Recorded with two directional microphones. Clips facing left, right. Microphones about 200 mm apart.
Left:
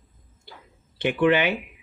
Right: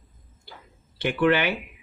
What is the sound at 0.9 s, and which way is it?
Speech, 15° left (ahead or behind).